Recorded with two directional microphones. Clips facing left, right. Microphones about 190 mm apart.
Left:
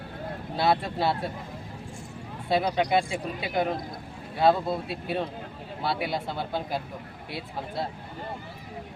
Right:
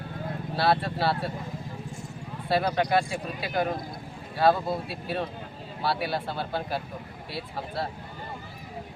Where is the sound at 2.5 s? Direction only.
20° left (ahead or behind).